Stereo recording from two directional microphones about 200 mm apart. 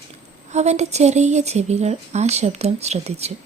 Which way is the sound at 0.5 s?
35° right (ahead or behind).